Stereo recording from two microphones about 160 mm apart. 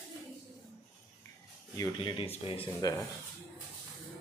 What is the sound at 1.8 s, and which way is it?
Speech, 30° left (ahead or behind).